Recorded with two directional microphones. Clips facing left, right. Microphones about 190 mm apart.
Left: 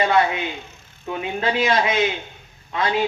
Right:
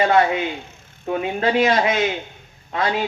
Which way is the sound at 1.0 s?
45° right (ahead or behind).